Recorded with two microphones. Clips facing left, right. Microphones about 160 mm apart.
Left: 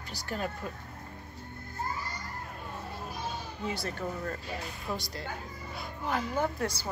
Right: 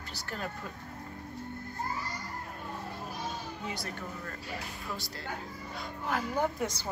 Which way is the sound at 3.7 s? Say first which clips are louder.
Left 5 dB; 30° left (ahead or behind).